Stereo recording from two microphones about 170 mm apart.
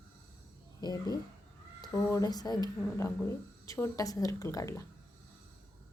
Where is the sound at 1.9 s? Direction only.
5° left (ahead or behind).